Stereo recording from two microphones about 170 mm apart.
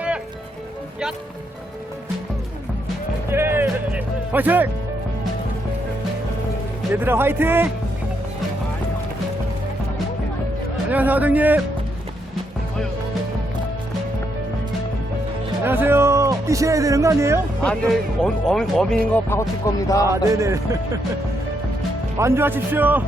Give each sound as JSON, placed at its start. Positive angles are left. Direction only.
{"t": 3.3, "sound": "music", "side_deg": -15}
{"t": 6.9, "sound": "music", "side_deg": -10}
{"t": 10.9, "sound": "music", "side_deg": -10}
{"t": 15.6, "sound": "speech", "side_deg": -15}
{"t": 17.6, "sound": "speech", "side_deg": 5}
{"t": 19.1, "sound": "music", "side_deg": 15}
{"t": 20.1, "sound": "music", "side_deg": -15}
{"t": 22.2, "sound": "music", "side_deg": -15}